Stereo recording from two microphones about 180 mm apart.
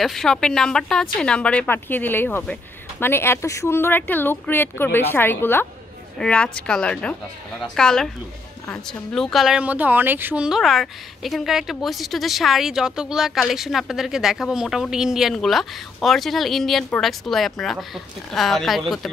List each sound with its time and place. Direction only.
0.0 s speech: centre (ahead or behind)